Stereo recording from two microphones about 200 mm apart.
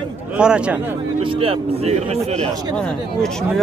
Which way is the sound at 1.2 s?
30° right (ahead or behind).